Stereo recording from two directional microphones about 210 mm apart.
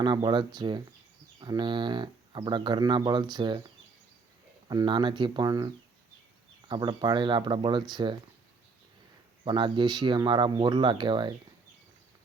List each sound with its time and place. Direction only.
0.0 s speech: 20° right (ahead or behind)
4.7 s speech: 20° right (ahead or behind)
9.4 s speech: 25° right (ahead or behind)